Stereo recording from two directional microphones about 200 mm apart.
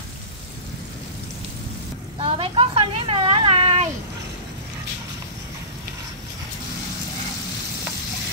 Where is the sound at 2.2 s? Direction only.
25° right (ahead or behind).